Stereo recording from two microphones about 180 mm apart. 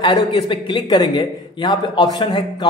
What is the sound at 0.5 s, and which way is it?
A man's voice, 25° left (ahead or behind).